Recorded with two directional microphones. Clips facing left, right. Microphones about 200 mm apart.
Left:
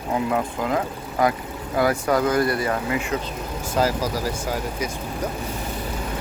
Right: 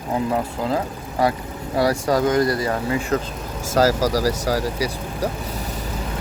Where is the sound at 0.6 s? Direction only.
30° right (ahead or behind).